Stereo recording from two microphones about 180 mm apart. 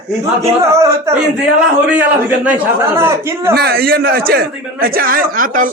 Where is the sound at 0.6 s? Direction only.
15° right (ahead or behind).